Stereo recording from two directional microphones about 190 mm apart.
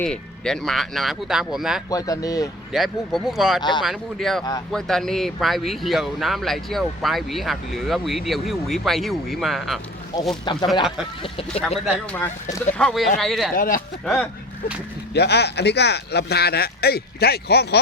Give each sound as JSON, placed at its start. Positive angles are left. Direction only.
{"t": 0.0, "sound": "speech", "side_deg": 5}
{"t": 1.9, "sound": "speech", "side_deg": 20}
{"t": 2.7, "sound": "speech", "side_deg": 0}
{"t": 3.6, "sound": "speech", "side_deg": 25}
{"t": 3.8, "sound": "speech", "side_deg": 0}
{"t": 10.4, "sound": "speech", "side_deg": 25}
{"t": 12.2, "sound": "speech", "side_deg": 15}
{"t": 12.8, "sound": "speech", "side_deg": 0}
{"t": 13.6, "sound": "speech", "side_deg": 45}
{"t": 14.0, "sound": "speech", "side_deg": 5}
{"t": 15.1, "sound": "speech", "side_deg": 60}